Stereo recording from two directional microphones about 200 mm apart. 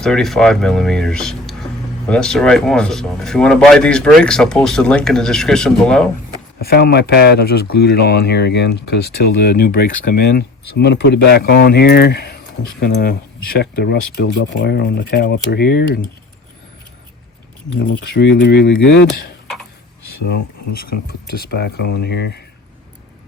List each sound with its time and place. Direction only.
0.0 s speech: centre (ahead or behind)
6.7 s speech: 50° left (ahead or behind)
17.7 s speech: 60° left (ahead or behind)